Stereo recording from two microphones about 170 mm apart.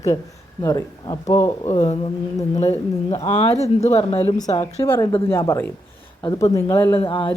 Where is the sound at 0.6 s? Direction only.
25° left (ahead or behind).